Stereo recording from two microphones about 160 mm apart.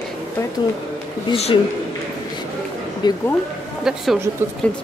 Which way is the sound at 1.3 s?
40° left (ahead or behind).